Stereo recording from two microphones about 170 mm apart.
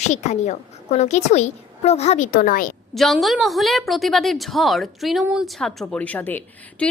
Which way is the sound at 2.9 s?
Centre (ahead or behind).